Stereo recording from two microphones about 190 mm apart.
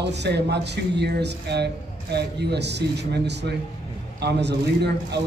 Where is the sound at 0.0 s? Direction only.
65° right (ahead or behind).